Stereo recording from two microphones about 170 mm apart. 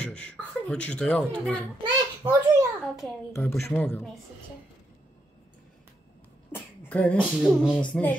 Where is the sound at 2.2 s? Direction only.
20° right (ahead or behind).